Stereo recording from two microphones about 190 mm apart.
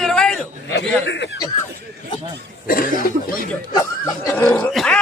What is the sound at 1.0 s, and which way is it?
Speech, 70° left (ahead or behind).